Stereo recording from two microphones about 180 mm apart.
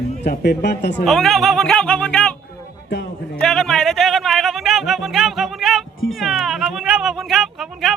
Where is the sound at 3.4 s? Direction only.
5° left (ahead or behind).